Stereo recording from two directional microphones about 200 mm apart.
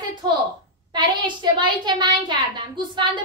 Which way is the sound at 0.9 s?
25° right (ahead or behind).